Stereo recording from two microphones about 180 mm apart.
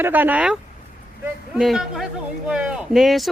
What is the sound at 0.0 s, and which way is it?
A woman's voice, 10° right (ahead or behind).